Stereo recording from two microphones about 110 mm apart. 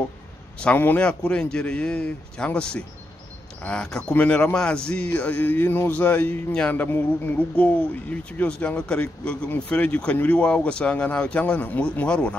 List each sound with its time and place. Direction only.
0.6 s speech: 15° left (ahead or behind)